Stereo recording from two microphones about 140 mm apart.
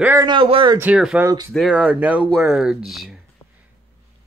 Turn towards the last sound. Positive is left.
turn(degrees=0)  # may be behind; listen again after turning